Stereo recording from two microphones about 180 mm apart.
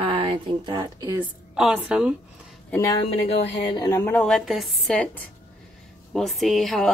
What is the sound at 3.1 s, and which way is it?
A woman's voice, 35° left (ahead or behind).